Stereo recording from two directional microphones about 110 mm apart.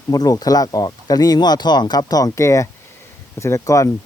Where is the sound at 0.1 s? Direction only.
35° left (ahead or behind).